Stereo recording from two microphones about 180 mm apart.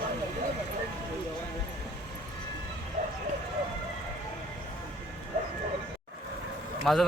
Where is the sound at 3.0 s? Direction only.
45° right (ahead or behind).